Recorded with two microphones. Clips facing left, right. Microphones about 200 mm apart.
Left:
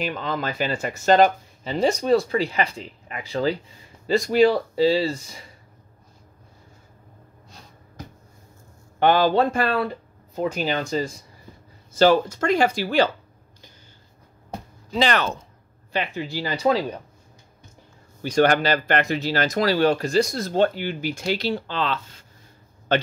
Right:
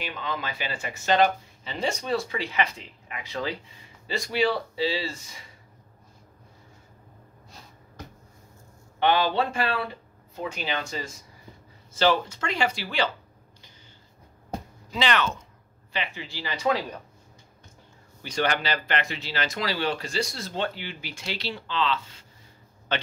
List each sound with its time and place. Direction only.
0.0 s speech: 45° left (ahead or behind)
4.3 s speech: 45° left (ahead or behind)
9.0 s speech: 45° left (ahead or behind)
14.9 s speech: 40° left (ahead or behind)
18.2 s speech: 45° left (ahead or behind)